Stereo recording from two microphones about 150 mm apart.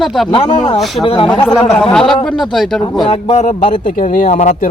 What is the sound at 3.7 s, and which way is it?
Speech, 60° left (ahead or behind).